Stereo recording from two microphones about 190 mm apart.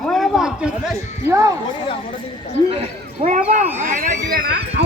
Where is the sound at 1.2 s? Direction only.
15° right (ahead or behind).